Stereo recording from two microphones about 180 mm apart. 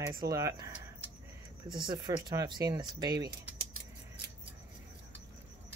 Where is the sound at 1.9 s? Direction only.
25° right (ahead or behind).